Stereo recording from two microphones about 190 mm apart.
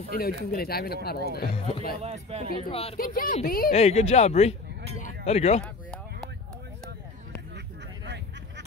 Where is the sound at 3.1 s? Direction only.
45° left (ahead or behind).